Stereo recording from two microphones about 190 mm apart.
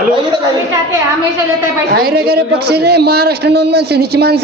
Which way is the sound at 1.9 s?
55° right (ahead or behind).